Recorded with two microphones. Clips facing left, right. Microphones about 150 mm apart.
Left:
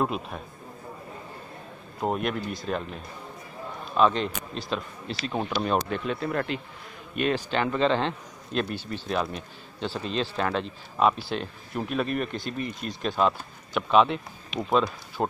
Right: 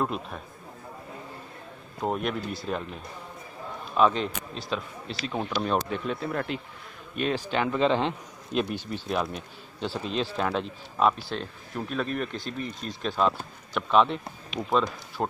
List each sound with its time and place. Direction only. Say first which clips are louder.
0.0 s speech: left 2 dB; 10° left (ahead or behind)
2.0 s a man's voice: left 1 dB; 5° left (ahead or behind)
3.9 s speech: even; 5° right (ahead or behind)
11.1 s speech: left 1 dB; 10° left (ahead or behind)
14.6 s speech: left 2 dB; 20° left (ahead or behind)
15.2 s speech: left 2 dB; 5° left (ahead or behind)